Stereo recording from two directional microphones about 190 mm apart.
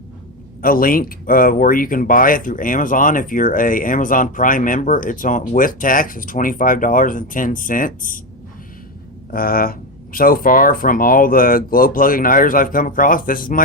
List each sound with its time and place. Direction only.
0.6 s speech: 50° left (ahead or behind)
9.3 s speech: 50° left (ahead or behind)